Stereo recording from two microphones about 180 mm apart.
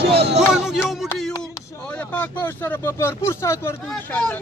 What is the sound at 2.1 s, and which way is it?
Speech, 10° left (ahead or behind).